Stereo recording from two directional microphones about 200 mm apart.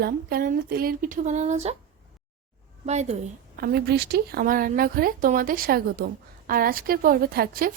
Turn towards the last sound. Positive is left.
turn(degrees=-45)  # may be behind; listen again after turning